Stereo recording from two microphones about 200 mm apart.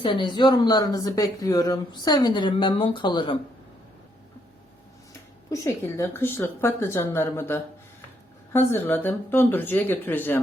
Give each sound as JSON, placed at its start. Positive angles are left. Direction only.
{"t": 0.0, "sound": "speech", "side_deg": 25}
{"t": 5.5, "sound": "a woman's voice", "side_deg": 15}